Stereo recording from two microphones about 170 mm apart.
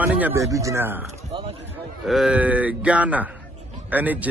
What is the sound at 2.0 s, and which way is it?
A man's voice, centre (ahead or behind).